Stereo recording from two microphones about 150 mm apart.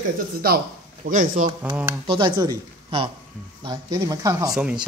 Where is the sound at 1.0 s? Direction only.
60° right (ahead or behind).